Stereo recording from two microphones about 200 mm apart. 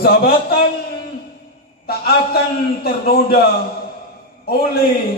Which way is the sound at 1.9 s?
50° left (ahead or behind).